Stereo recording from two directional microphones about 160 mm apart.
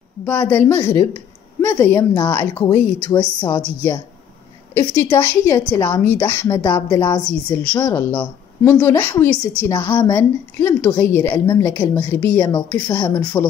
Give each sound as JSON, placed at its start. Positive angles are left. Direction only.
{"t": 0.2, "sound": "a woman's voice", "side_deg": 10}
{"t": 5.1, "sound": "a woman's voice", "side_deg": 15}